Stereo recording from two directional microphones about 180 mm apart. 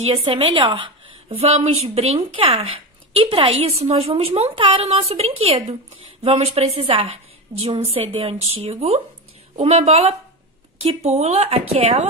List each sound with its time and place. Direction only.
0.0 s a woman's voice: 30° right (ahead or behind)